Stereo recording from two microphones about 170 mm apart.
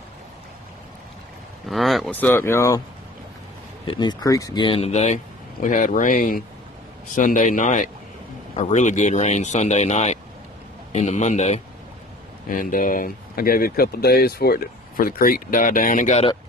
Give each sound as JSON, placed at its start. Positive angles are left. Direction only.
{"t": 1.7, "sound": "speech", "side_deg": 0}
{"t": 2.1, "sound": "speech", "side_deg": 10}
{"t": 3.8, "sound": "speech", "side_deg": 25}
{"t": 12.4, "sound": "speech", "side_deg": 50}